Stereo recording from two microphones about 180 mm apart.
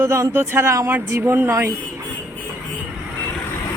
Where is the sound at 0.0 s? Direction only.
15° right (ahead or behind).